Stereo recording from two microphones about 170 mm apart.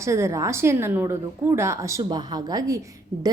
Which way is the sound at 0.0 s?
15° right (ahead or behind).